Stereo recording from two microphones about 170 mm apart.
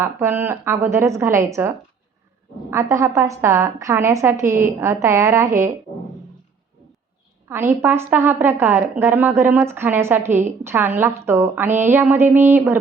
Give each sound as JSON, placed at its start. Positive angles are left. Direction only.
{"t": 0.0, "sound": "a woman's voice", "side_deg": -15}
{"t": 7.5, "sound": "a woman's voice", "side_deg": -15}